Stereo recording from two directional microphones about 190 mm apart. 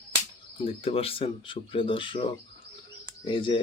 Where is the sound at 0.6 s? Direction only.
30° left (ahead or behind).